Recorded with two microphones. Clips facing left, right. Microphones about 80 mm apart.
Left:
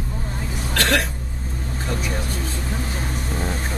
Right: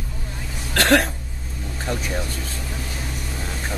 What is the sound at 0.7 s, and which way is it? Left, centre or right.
Hiccup, right.